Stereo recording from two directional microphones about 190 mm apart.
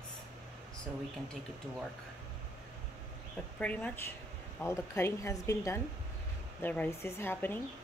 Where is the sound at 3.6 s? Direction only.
5° left (ahead or behind).